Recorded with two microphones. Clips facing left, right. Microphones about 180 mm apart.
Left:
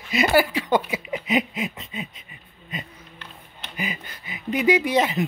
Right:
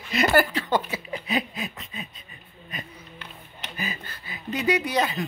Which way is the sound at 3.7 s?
15° left (ahead or behind).